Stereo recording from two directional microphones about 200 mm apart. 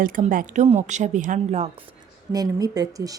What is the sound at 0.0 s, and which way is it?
A woman's voice, 45° right (ahead or behind).